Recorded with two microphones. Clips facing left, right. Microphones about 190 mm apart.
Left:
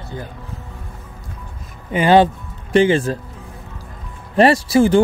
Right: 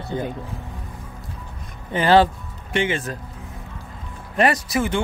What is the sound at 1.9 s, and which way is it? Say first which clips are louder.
Speech: left 3 dB; 15° left (ahead or behind).